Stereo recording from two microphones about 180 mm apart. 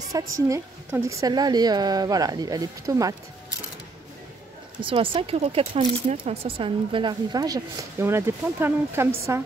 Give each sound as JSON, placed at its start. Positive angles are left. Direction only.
{"t": 0.1, "sound": "speech", "side_deg": -20}
{"t": 4.8, "sound": "speech", "side_deg": -30}